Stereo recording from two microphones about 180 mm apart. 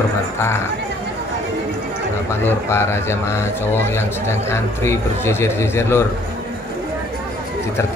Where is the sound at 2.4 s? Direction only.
15° left (ahead or behind).